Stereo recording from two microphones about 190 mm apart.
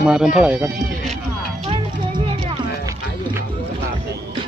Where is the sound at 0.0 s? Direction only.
5° right (ahead or behind).